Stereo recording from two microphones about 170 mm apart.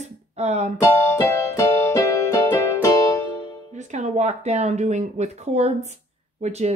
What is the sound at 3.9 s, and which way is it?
Speech, 45° right (ahead or behind).